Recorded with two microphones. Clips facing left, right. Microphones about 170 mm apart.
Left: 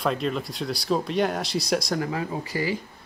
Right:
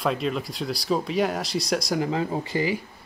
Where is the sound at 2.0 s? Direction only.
25° right (ahead or behind).